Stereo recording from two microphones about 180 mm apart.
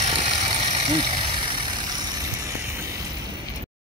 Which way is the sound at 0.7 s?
30° right (ahead or behind).